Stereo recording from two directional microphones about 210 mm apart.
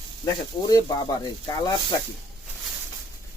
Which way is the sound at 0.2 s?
15° left (ahead or behind).